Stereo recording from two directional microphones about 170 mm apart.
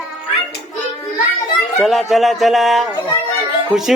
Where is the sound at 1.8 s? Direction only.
Centre (ahead or behind).